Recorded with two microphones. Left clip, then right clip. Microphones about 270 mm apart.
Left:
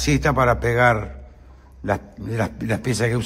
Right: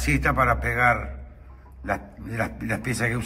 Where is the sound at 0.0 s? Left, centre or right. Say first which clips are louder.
Left 3 dB; left.